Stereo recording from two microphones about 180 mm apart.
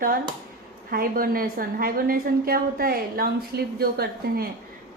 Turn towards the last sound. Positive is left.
turn(degrees=-60)  # may be behind; listen again after turning